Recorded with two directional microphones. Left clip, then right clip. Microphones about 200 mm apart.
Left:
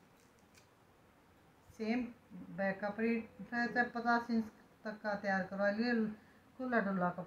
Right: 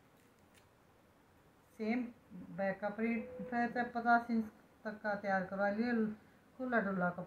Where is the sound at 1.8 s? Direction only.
5° right (ahead or behind).